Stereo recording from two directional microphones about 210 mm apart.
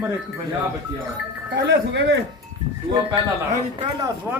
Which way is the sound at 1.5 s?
55° right (ahead or behind).